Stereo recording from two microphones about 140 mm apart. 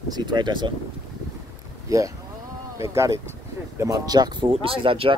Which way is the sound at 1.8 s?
25° right (ahead or behind).